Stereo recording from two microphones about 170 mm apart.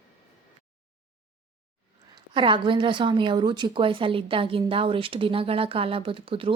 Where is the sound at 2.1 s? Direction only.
30° right (ahead or behind).